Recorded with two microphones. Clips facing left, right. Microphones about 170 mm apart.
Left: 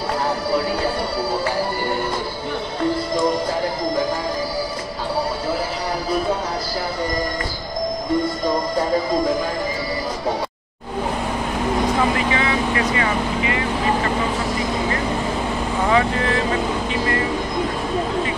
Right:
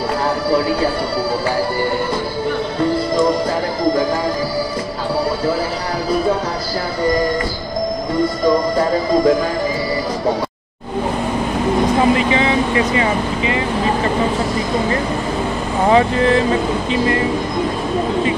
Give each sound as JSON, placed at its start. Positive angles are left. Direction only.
{"t": 12.0, "sound": "vehicle", "side_deg": -20}
{"t": 15.9, "sound": "vehicle", "side_deg": -25}
{"t": 16.9, "sound": "a sound", "side_deg": -20}